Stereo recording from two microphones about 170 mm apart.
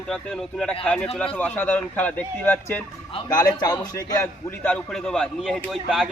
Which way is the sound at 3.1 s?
25° left (ahead or behind).